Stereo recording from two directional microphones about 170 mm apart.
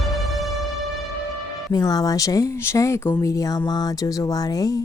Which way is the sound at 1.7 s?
20° left (ahead or behind).